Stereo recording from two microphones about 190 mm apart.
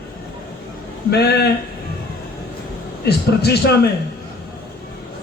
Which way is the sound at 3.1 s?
60° left (ahead or behind).